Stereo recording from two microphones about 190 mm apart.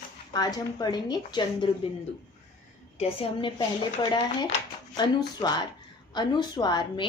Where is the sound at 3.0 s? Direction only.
30° left (ahead or behind).